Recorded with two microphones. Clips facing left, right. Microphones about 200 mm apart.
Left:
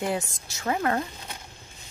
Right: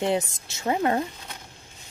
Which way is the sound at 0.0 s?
25° right (ahead or behind).